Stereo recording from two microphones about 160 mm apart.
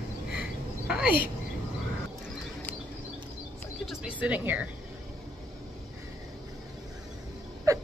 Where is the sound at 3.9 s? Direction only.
5° right (ahead or behind).